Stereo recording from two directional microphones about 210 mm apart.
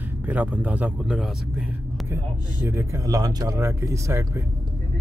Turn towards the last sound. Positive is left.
turn(degrees=-15)  # may be behind; listen again after turning